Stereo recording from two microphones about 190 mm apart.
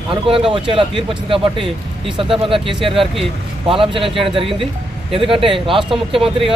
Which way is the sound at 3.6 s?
30° right (ahead or behind).